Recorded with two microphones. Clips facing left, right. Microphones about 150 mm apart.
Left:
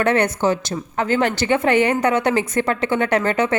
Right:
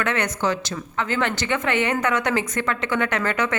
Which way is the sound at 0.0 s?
35° left (ahead or behind).